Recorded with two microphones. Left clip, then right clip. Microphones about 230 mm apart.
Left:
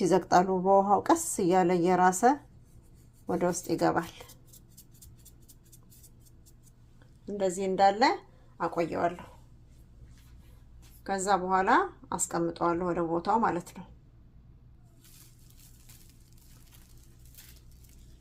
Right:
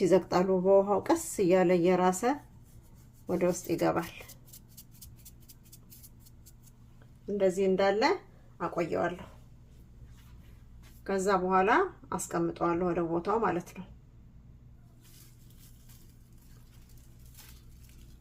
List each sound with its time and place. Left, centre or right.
0.1 s a woman's voice: centre
7.3 s a woman's voice: left
8.5 s speech: left
11.0 s a woman's voice: left